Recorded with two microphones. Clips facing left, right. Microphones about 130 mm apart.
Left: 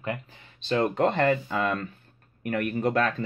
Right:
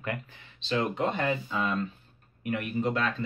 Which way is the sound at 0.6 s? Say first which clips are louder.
Left 4 dB; 45° left (ahead or behind).